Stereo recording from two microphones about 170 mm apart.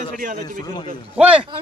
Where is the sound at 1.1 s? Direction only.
5° right (ahead or behind).